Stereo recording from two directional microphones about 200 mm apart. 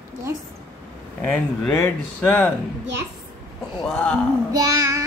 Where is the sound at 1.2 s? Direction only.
5° left (ahead or behind).